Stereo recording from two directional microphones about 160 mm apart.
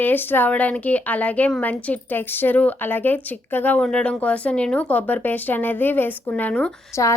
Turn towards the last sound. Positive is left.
turn(degrees=20)  # may be behind; listen again after turning